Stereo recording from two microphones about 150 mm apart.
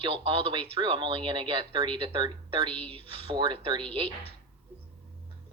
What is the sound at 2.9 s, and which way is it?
Speech, 35° right (ahead or behind).